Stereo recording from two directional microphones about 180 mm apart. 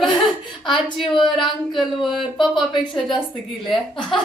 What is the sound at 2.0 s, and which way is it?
Speech, centre (ahead or behind).